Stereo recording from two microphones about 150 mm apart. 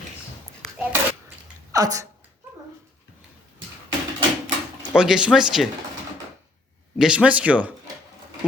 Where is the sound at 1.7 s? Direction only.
25° right (ahead or behind).